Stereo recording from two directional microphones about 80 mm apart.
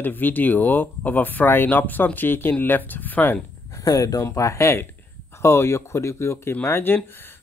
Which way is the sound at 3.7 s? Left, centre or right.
Left.